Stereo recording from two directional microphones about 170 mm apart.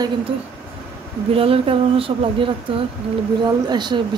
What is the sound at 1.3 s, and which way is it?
A woman's voice, 35° right (ahead or behind).